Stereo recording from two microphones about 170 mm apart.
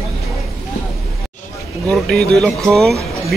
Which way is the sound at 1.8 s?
5° left (ahead or behind).